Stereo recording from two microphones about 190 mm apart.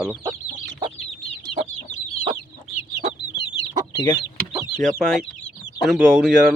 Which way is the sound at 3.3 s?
25° left (ahead or behind).